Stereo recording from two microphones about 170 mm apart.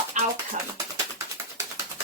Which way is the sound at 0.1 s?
45° right (ahead or behind).